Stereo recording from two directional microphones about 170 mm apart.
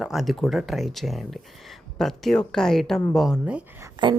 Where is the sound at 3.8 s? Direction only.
25° right (ahead or behind).